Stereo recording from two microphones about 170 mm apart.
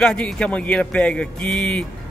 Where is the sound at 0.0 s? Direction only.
5° left (ahead or behind).